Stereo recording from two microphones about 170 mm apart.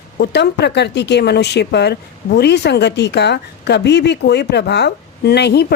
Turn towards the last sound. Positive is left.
turn(degrees=75)  # may be behind; listen again after turning